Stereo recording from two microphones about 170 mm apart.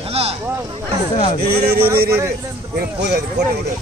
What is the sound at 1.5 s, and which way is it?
Speech, 70° right (ahead or behind).